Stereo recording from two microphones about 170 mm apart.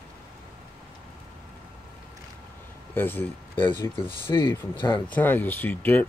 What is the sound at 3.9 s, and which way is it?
Speech, 30° left (ahead or behind).